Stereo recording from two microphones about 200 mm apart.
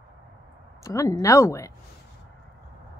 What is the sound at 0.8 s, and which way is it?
Speech, 15° left (ahead or behind).